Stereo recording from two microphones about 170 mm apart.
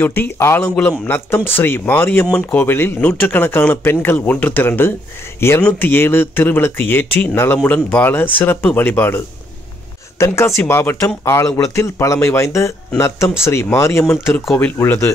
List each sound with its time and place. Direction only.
0.0 s speech: 10° left (ahead or behind)
14.4 s speech: centre (ahead or behind)
14.8 s speech: 15° left (ahead or behind)